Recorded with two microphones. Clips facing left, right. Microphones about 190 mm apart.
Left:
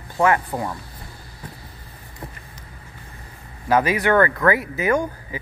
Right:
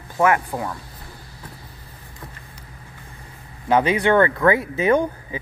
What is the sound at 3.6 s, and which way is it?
Speech, 25° right (ahead or behind).